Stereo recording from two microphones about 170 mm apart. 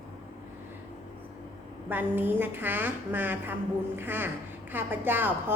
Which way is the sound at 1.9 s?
10° right (ahead or behind).